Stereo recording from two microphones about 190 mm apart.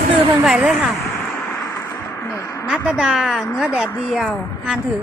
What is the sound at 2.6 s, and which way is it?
A woman's voice, 5° right (ahead or behind).